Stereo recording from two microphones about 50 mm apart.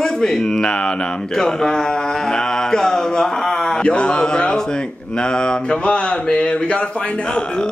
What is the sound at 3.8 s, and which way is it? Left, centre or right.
Speech, left.